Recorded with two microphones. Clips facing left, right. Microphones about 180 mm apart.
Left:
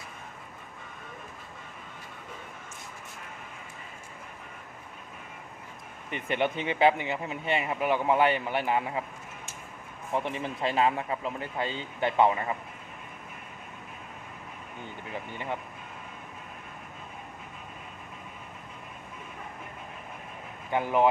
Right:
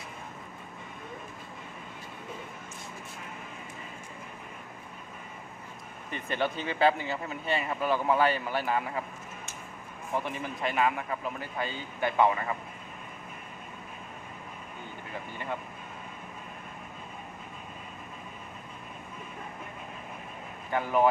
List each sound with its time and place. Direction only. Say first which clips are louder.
6.1 s speech: left 2 dB; 20° left (ahead or behind)
10.2 s speech: left 2 dB; 25° left (ahead or behind)
20.7 s speech: left 1 dB; 20° left (ahead or behind)